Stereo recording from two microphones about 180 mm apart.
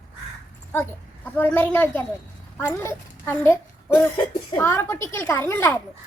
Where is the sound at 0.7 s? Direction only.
10° left (ahead or behind).